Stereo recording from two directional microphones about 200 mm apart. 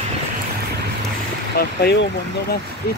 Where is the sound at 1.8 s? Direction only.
55° left (ahead or behind).